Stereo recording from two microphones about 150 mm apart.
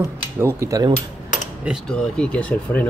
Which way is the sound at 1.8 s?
5° left (ahead or behind).